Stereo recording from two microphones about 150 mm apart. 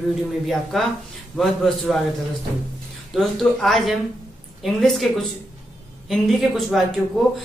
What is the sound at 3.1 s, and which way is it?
Speech, centre (ahead or behind).